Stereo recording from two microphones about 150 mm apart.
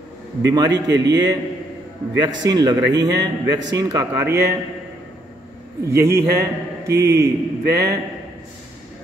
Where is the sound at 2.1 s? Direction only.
30° right (ahead or behind).